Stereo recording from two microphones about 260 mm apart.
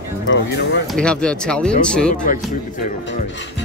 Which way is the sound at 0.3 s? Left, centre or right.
Left.